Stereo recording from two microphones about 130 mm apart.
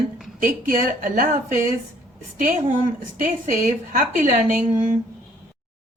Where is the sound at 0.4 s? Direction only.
90° right.